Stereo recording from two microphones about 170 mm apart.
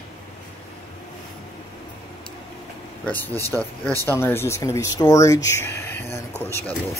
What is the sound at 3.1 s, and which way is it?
Speech, 10° left (ahead or behind).